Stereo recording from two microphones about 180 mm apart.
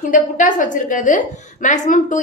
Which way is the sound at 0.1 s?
45° left (ahead or behind).